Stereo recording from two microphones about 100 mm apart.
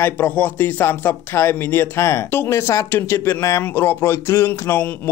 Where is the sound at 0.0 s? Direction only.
20° left (ahead or behind).